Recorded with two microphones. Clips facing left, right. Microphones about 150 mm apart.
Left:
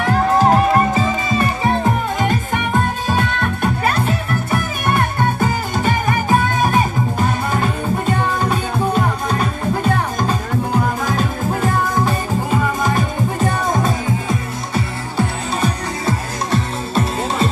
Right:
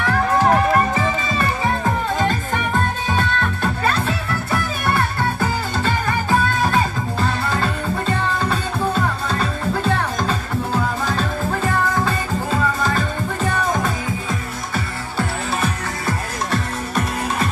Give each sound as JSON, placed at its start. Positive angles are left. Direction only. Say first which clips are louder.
{"t": 0.0, "sound": "music", "louder": "left 3 dB", "side_deg": 20}